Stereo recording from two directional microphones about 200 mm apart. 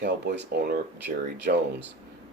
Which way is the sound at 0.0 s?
55° right (ahead or behind).